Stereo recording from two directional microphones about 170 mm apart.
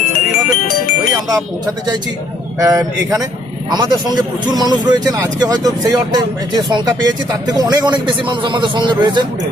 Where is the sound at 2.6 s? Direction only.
15° right (ahead or behind).